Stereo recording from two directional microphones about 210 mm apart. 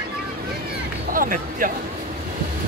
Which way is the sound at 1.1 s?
40° right (ahead or behind).